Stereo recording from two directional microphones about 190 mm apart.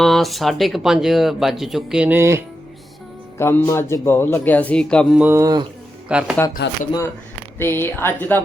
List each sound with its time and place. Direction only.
0.0 s speech: centre (ahead or behind)
3.3 s speech: 15° left (ahead or behind)
5.2 s speech: 15° right (ahead or behind)
6.1 s speech: 5° right (ahead or behind)
7.6 s speech: 10° left (ahead or behind)